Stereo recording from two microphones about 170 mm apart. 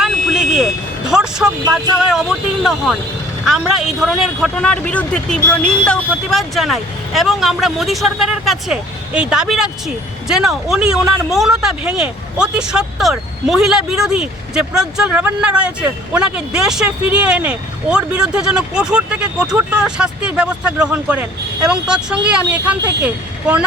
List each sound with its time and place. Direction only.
0.0 s vehicle: 5° right (ahead or behind)
1.7 s speech: centre (ahead or behind)